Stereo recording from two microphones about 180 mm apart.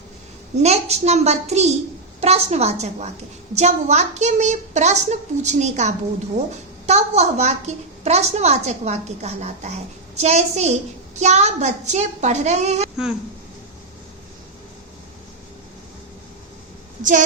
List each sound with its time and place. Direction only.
0.6 s a child's voice: 35° right (ahead or behind)
17.0 s a woman's voice: 45° right (ahead or behind)